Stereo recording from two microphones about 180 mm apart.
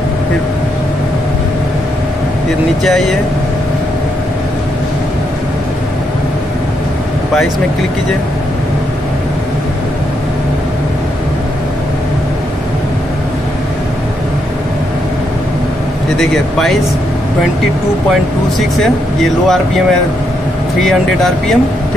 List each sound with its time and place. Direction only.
2.8 s speech: centre (ahead or behind)
16.2 s speech: centre (ahead or behind)
20.8 s speech: centre (ahead or behind)